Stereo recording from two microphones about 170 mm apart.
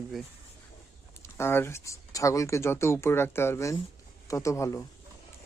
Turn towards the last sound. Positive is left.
turn(degrees=15)  # may be behind; listen again after turning